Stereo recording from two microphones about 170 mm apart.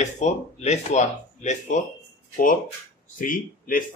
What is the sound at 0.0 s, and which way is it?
Speech, 40° left (ahead or behind).